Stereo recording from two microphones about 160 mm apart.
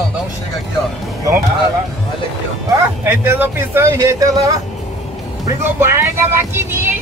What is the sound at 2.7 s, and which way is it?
Speech, 15° right (ahead or behind).